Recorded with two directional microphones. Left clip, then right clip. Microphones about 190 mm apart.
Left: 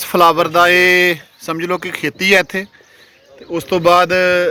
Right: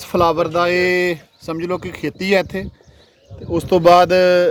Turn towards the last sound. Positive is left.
turn(degrees=-25)  # may be behind; listen again after turning